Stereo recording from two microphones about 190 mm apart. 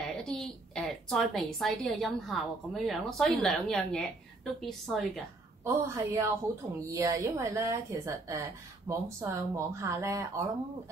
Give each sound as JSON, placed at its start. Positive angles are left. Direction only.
{"t": 0.0, "sound": "a woman's voice", "side_deg": 5}
{"t": 5.6, "sound": "a woman's voice", "side_deg": -15}